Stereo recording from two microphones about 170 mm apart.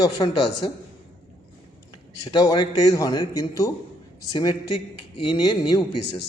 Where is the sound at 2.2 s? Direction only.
25° left (ahead or behind).